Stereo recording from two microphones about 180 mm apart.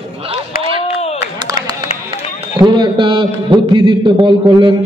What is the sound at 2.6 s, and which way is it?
A man's voice, 25° right (ahead or behind).